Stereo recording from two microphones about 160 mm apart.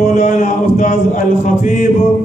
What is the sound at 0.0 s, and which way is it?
Chant, 55° left (ahead or behind).